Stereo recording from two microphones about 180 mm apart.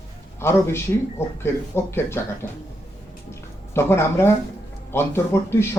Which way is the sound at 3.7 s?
15° left (ahead or behind).